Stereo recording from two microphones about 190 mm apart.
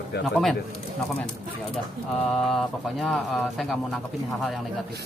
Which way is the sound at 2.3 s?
Centre (ahead or behind).